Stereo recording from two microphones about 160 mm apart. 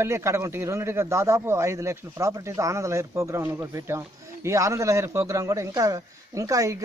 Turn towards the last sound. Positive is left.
turn(degrees=-20)  # may be behind; listen again after turning